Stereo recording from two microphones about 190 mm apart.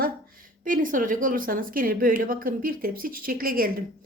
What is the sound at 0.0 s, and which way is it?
Speech, 50° right (ahead or behind).